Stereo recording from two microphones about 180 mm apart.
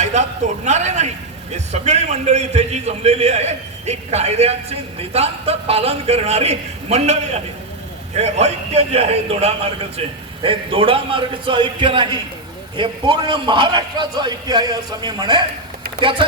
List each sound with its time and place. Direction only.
0.0 s a man's voice: 40° right (ahead or behind)